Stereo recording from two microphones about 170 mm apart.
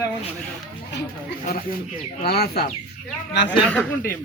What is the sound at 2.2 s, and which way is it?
Speech, 70° left (ahead or behind).